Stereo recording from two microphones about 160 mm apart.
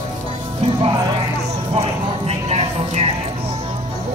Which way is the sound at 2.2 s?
40° right (ahead or behind).